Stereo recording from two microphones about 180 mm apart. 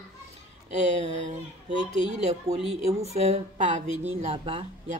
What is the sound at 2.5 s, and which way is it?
A woman's voice, 35° right (ahead or behind).